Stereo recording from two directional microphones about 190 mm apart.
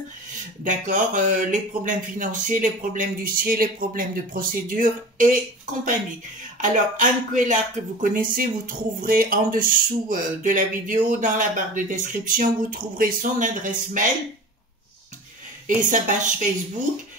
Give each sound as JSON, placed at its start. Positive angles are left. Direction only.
{"t": 0.7, "sound": "speech", "side_deg": -40}
{"t": 6.6, "sound": "speech", "side_deg": -40}
{"t": 15.8, "sound": "speech", "side_deg": -40}